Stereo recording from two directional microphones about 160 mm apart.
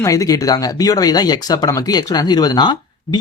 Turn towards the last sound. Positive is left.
turn(degrees=25)  # may be behind; listen again after turning